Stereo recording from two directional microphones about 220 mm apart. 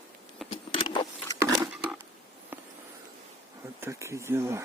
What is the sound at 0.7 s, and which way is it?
Vehicle, 20° left (ahead or behind).